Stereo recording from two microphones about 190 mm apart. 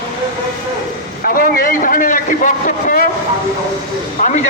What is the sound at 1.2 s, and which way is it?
A man's voice, 50° left (ahead or behind).